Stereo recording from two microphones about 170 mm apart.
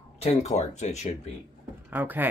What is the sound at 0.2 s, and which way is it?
Speech, 40° left (ahead or behind).